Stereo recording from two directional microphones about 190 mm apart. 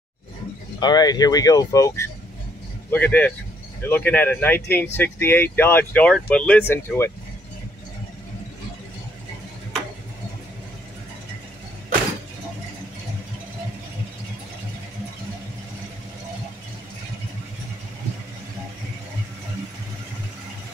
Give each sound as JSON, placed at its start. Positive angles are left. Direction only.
{"t": 0.7, "sound": "speech", "side_deg": 20}